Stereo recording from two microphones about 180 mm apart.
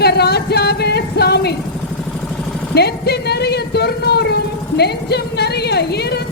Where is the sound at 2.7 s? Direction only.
65° left (ahead or behind).